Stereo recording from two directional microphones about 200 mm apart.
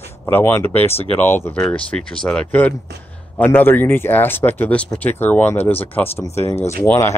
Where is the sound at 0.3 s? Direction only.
10° left (ahead or behind).